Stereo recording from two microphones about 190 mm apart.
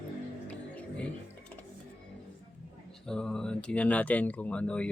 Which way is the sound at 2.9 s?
5° left (ahead or behind).